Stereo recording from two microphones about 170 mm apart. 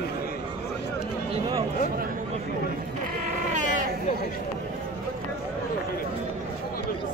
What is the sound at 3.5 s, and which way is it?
Sheep, 50° right (ahead or behind).